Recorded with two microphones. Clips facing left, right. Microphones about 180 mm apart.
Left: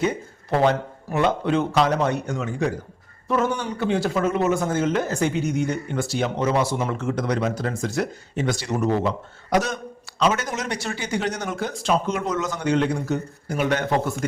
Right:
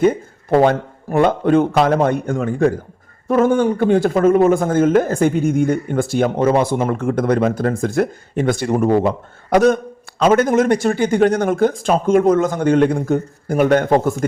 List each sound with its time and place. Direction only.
0.6 s speech: 55° right (ahead or behind)